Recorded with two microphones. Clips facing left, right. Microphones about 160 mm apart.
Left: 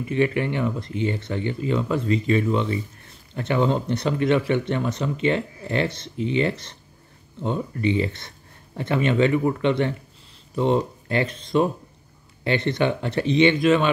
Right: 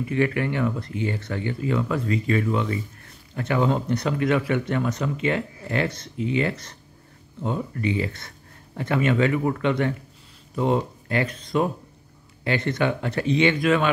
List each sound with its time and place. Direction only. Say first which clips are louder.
0.1 s speech: left 2 dB; 20° left (ahead or behind)